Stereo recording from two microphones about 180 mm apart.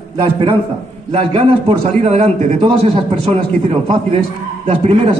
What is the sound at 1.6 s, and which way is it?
A man's voice, 35° right (ahead or behind).